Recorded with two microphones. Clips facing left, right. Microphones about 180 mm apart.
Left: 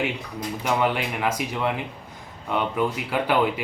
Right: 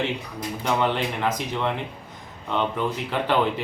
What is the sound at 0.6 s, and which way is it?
Speech, 10° left (ahead or behind).